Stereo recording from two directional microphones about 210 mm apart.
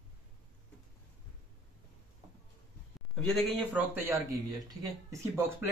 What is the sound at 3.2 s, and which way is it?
Speech, 5° left (ahead or behind).